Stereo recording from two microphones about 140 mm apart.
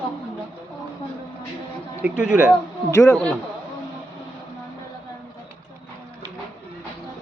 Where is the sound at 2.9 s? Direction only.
20° left (ahead or behind).